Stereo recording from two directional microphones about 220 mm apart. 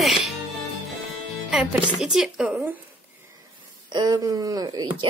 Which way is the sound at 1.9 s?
Centre (ahead or behind).